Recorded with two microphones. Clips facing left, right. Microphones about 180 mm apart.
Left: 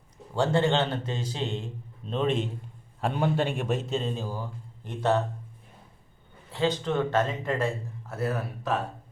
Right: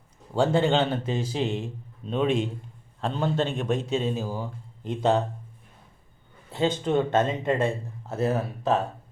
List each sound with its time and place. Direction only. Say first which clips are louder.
0.3 s a man's voice: right 2 dB; 10° right (ahead or behind)
3.0 s a man's voice: even; 10° left (ahead or behind); by 5.2 s 15° right (ahead or behind)
6.6 s speech: right 3 dB; 20° right (ahead or behind)